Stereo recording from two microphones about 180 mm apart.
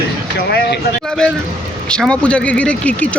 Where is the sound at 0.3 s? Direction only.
65° left (ahead or behind).